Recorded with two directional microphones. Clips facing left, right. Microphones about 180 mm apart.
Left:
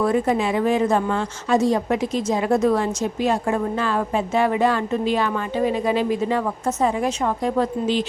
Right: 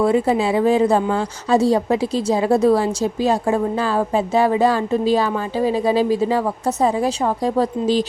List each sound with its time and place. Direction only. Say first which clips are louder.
0.0 s a woman's voice: right 3 dB; 30° right (ahead or behind)